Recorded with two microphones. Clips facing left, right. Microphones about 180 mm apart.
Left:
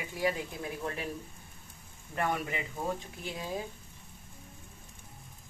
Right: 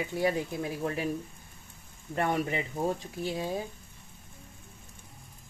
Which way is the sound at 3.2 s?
30° right (ahead or behind).